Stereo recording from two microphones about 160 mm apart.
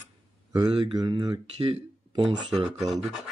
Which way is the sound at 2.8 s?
Centre (ahead or behind).